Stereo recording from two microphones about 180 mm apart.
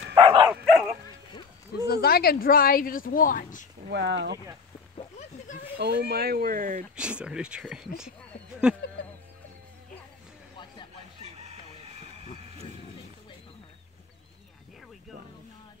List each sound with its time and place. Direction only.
0.1 s bow-wow: 30° right (ahead or behind)
0.7 s bow-wow: centre (ahead or behind)
1.9 s speech: 60° left (ahead or behind)
3.9 s speech: 75° right (ahead or behind)
4.9 s a sound: 40° left (ahead or behind)
5.8 s speech: 65° right (ahead or behind); by 6.9 s 45° right (ahead or behind)
7.0 s speech: 5° right (ahead or behind)